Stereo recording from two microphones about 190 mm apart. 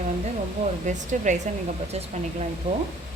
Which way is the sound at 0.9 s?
40° right (ahead or behind).